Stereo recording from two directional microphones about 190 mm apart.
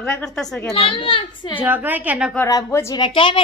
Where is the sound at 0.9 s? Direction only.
25° left (ahead or behind).